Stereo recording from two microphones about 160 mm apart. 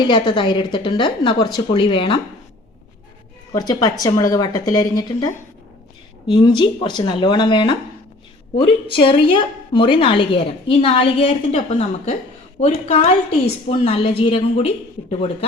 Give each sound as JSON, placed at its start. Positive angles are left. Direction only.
{"t": 0.0, "sound": "a woman's voice", "side_deg": 30}
{"t": 3.5, "sound": "a woman's voice", "side_deg": 25}
{"t": 6.3, "sound": "a woman's voice", "side_deg": 25}
{"t": 9.0, "sound": "a woman's voice", "side_deg": 30}